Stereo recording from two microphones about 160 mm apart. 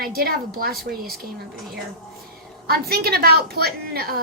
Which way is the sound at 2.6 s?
75° right (ahead or behind).